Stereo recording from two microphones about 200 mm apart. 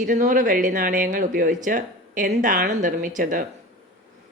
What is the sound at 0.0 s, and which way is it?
Speech, 40° right (ahead or behind).